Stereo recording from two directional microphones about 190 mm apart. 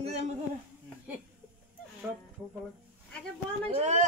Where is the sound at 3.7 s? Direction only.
35° right (ahead or behind).